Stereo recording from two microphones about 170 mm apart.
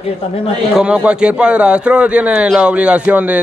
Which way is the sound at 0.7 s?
5° right (ahead or behind).